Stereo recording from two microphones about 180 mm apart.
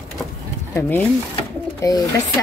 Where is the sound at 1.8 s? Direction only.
15° left (ahead or behind).